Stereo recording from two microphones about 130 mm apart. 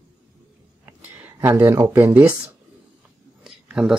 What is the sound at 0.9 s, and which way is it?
Speech, 15° right (ahead or behind).